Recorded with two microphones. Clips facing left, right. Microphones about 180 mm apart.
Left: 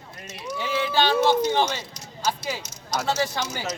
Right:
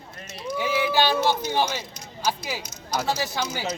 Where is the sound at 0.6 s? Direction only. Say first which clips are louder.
Right 1 dB; 10° right (ahead or behind).